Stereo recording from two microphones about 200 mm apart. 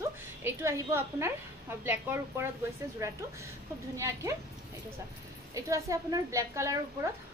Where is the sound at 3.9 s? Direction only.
15° right (ahead or behind).